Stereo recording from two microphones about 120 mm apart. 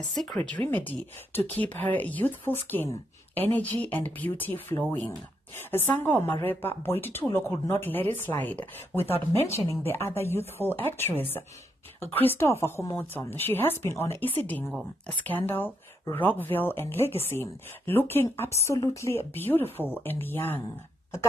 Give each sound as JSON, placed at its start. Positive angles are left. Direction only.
{"t": 0.1, "sound": "a woman's voice", "side_deg": 0}